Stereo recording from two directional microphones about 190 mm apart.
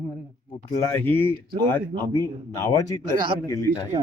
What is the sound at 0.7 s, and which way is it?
Speech, 15° left (ahead or behind).